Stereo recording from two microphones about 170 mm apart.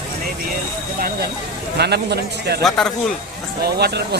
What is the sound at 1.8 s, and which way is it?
Speech, 75° right (ahead or behind).